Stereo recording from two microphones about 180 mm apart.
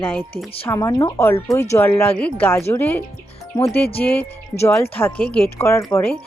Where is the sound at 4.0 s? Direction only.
10° left (ahead or behind).